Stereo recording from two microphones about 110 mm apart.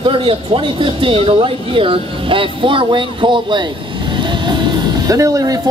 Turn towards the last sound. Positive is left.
turn(degrees=-30)  # may be behind; listen again after turning